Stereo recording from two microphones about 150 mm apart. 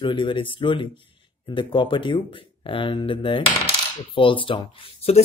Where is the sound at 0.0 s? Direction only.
35° left (ahead or behind).